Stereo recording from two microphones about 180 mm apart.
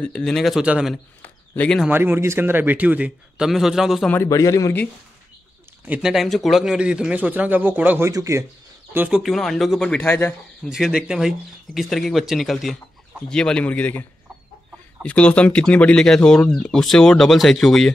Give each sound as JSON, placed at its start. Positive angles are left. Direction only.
{"t": 0.0, "sound": "speech", "side_deg": 5}
{"t": 1.2, "sound": "speech", "side_deg": 10}
{"t": 1.9, "sound": "a man's voice", "side_deg": -10}
{"t": 4.1, "sound": "a man's voice", "side_deg": 15}
{"t": 5.9, "sound": "a man's voice", "side_deg": 0}
{"t": 8.9, "sound": "speech", "side_deg": -5}
{"t": 10.7, "sound": "a man's voice", "side_deg": 0}
{"t": 15.0, "sound": "speech", "side_deg": 5}